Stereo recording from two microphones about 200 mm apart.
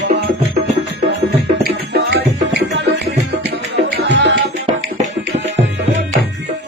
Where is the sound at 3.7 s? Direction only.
60° right (ahead or behind).